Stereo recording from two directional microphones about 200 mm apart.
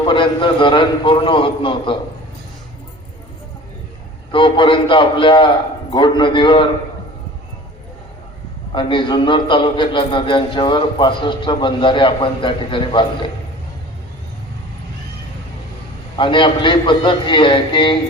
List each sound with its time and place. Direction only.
0.1 s a man's voice: 25° left (ahead or behind)
4.3 s a man's voice: 25° left (ahead or behind)
8.7 s a man's voice: 25° left (ahead or behind)
16.1 s a man's voice: 25° left (ahead or behind)